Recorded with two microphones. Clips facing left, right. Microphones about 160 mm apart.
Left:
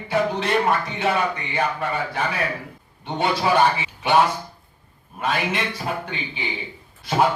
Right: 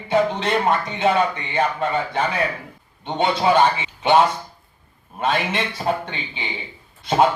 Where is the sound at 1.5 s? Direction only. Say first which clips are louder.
Right 4 dB; 25° right (ahead or behind).